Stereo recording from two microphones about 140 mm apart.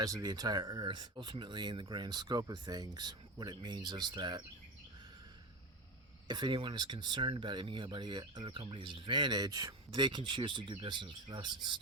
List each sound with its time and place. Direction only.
0.0 s speech: 25° right (ahead or behind)
6.2 s speech: 35° right (ahead or behind)